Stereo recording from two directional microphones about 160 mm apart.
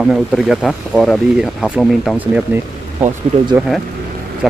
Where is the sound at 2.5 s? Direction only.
10° right (ahead or behind).